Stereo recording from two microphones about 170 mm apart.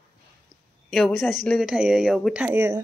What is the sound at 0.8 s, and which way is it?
Speech, centre (ahead or behind).